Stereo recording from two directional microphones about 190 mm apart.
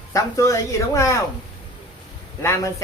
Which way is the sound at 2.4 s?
15° left (ahead or behind).